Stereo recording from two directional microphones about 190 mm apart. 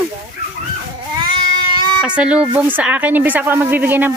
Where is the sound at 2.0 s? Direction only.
5° right (ahead or behind).